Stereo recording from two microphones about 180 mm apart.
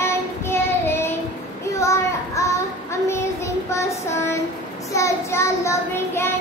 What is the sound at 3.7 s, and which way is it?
Child singing, 15° left (ahead or behind).